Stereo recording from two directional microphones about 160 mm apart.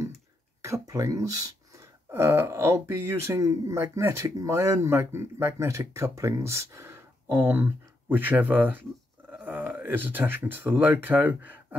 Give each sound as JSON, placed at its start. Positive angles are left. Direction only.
{"t": 0.7, "sound": "speech", "side_deg": -20}